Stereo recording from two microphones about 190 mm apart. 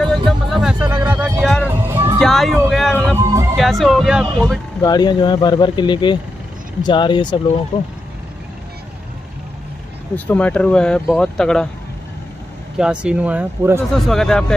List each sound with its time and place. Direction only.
0.0 s music: centre (ahead or behind)
1.8 s music: 15° right (ahead or behind)
2.1 s music: centre (ahead or behind)
3.2 s music: 15° right (ahead or behind)
3.5 s speech: centre (ahead or behind)
4.8 s speech: 20° left (ahead or behind)
10.1 s speech: 10° left (ahead or behind)
12.7 s speech: 5° right (ahead or behind)
14.0 s speech: centre (ahead or behind)